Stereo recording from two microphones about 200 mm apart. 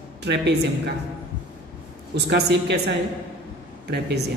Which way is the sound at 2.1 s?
60° right (ahead or behind).